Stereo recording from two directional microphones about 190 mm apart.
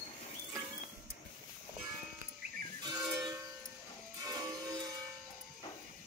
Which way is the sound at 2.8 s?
20° right (ahead or behind).